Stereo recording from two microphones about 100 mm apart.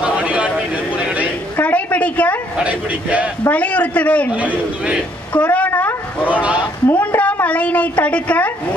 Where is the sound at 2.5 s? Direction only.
15° right (ahead or behind).